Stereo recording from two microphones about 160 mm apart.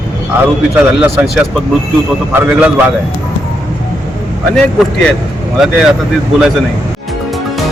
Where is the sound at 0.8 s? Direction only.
15° right (ahead or behind).